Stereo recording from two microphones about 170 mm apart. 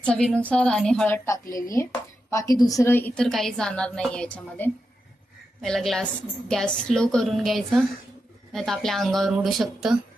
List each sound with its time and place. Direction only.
0.0 s a woman's voice: 5° left (ahead or behind)